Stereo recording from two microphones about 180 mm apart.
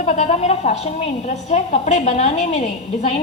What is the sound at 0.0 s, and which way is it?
A woman's voice, 40° left (ahead or behind).